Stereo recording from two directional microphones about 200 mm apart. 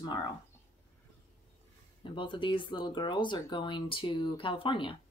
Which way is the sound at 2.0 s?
25° left (ahead or behind).